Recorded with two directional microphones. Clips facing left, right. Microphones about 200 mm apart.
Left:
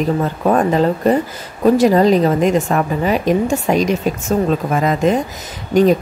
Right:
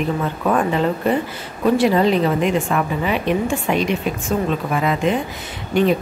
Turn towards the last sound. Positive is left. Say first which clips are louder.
# left 5 dB
turn(degrees=40)  # may be behind; listen again after turning